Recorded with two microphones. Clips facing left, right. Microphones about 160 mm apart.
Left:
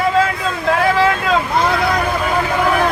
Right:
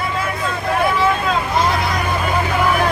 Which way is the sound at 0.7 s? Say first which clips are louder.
Left 3 dB; 90° left.